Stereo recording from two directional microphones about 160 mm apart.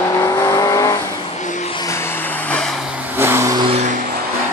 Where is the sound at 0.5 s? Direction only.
20° left (ahead or behind).